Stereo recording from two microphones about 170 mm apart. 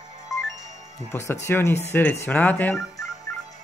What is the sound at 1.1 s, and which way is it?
Speech, 15° left (ahead or behind).